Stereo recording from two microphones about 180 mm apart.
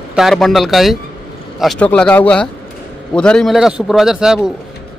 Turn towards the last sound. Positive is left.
turn(degrees=-5)  # may be behind; listen again after turning